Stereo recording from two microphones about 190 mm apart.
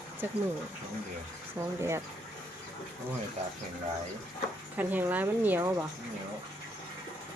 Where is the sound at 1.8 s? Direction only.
15° right (ahead or behind).